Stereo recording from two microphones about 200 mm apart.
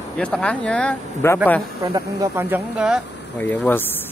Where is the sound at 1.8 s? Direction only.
15° right (ahead or behind).